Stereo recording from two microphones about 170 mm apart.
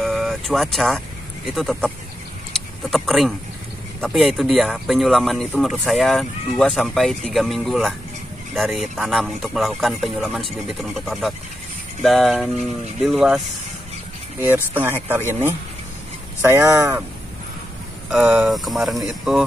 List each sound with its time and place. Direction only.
0.0 s vehicle: centre (ahead or behind)
2.5 s speech: centre (ahead or behind)
14.4 s speech: 10° right (ahead or behind)
18.1 s speech: 5° right (ahead or behind)